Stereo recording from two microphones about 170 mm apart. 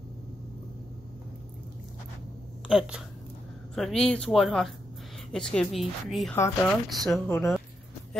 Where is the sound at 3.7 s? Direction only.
5° left (ahead or behind).